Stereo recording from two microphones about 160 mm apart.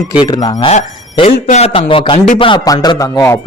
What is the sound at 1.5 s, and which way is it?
Speech, 40° left (ahead or behind).